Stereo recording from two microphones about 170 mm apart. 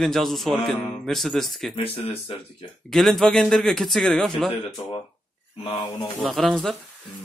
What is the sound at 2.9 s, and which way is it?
Speech, centre (ahead or behind).